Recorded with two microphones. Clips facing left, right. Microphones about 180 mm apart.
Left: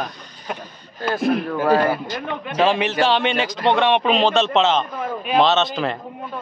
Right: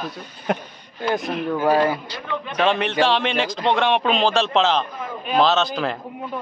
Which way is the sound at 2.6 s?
5° left (ahead or behind).